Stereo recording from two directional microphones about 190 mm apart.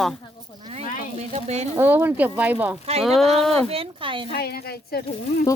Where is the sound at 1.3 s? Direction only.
35° right (ahead or behind).